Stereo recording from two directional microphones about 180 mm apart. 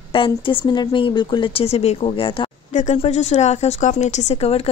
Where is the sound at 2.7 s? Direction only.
40° left (ahead or behind).